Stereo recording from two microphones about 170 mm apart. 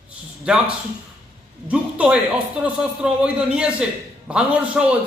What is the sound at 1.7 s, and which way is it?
A man's voice, 5° right (ahead or behind).